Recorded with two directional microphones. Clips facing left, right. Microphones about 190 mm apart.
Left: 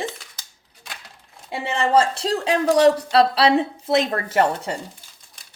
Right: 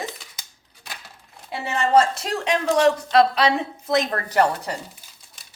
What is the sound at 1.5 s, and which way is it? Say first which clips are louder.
Speech: even; 30° left (ahead or behind).